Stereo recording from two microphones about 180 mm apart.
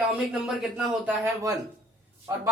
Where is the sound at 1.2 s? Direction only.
15° right (ahead or behind).